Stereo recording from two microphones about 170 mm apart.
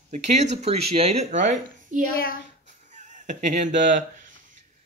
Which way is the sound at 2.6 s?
45° right (ahead or behind).